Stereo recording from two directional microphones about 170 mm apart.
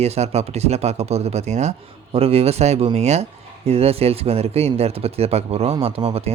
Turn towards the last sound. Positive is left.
turn(degrees=-35)  # may be behind; listen again after turning